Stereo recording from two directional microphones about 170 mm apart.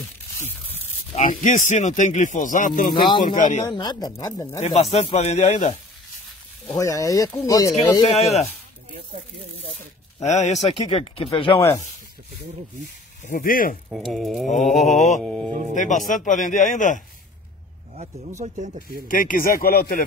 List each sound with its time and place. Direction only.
1.1 s speech: 45° left (ahead or behind)
3.7 s speech: 25° left (ahead or behind)
4.6 s speech: 40° left (ahead or behind)
6.8 s speech: 20° left (ahead or behind)
8.1 s speech: 40° left (ahead or behind)
10.2 s speech: 40° left (ahead or behind)
13.3 s a man's voice: 55° left (ahead or behind)
13.8 s speech: centre (ahead or behind)
14.7 s speech: 45° left (ahead or behind)
18.4 s speech: 50° right (ahead or behind)
19.0 s a man's voice: 50° left (ahead or behind)